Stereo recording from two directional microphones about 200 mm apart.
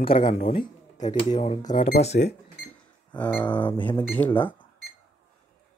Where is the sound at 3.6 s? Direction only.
10° left (ahead or behind).